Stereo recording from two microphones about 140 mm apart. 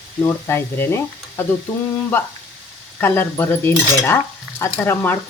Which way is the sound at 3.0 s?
15° left (ahead or behind).